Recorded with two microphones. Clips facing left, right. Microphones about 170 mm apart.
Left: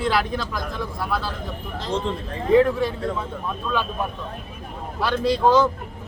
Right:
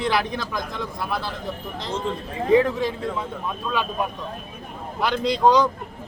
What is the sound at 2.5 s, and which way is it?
Speech, 15° right (ahead or behind).